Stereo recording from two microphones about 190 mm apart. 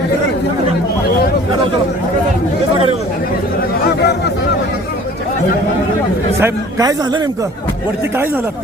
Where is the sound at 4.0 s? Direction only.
60° left (ahead or behind).